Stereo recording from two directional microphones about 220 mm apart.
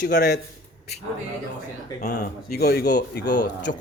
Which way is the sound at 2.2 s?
45° left (ahead or behind).